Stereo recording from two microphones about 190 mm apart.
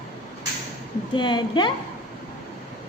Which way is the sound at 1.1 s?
25° left (ahead or behind).